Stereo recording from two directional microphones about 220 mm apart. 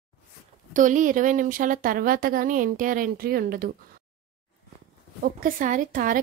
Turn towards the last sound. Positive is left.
turn(degrees=-40)  # may be behind; listen again after turning